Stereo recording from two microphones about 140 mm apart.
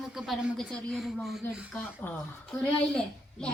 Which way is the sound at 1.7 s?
10° left (ahead or behind).